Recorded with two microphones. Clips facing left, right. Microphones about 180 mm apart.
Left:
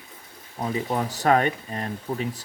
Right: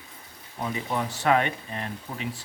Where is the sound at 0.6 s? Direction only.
35° left (ahead or behind).